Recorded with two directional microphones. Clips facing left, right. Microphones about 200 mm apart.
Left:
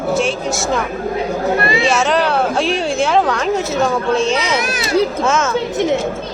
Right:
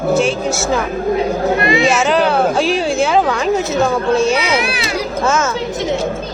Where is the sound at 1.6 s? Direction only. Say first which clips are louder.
Right 3 dB; 35° left (ahead or behind).